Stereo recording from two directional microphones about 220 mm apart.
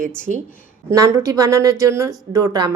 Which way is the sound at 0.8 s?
15° right (ahead or behind).